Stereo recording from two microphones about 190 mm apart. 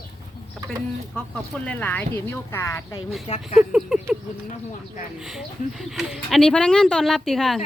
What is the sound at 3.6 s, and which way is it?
Speech, 5° right (ahead or behind).